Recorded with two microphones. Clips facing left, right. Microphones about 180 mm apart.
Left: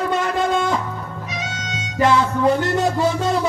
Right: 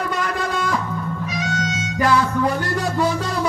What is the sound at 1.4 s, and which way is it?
Music, 25° left (ahead or behind).